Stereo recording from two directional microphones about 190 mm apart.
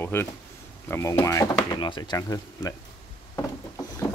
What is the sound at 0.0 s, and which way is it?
Speech, 10° left (ahead or behind).